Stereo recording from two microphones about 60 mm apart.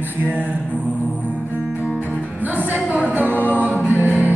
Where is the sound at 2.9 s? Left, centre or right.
Right.